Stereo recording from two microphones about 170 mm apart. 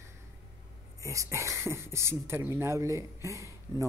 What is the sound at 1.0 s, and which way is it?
Speech, 20° right (ahead or behind).